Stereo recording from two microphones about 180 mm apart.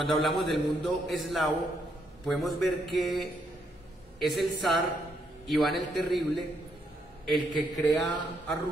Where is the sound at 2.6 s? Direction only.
Centre (ahead or behind).